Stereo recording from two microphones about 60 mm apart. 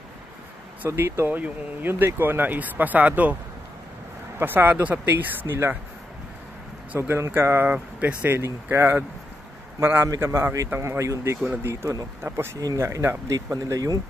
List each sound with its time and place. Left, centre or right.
0.8 s speech: right
1.3 s speech: right
4.4 s speech: right
7.0 s speech: right
7.6 s speech: right
8.7 s a man's voice: right
12.5 s speech: right
12.8 s speech: right